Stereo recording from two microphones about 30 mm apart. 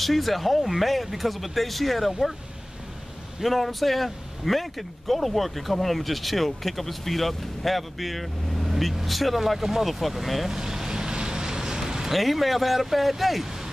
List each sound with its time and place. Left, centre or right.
0.0 s speech: centre
3.4 s speech: centre
10.5 s vehicle: centre
12.1 s speech: centre